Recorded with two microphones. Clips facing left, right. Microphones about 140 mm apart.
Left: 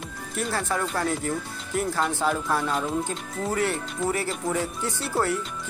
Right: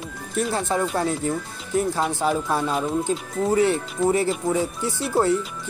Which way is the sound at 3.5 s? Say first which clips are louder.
Right 7 dB; 20° right (ahead or behind).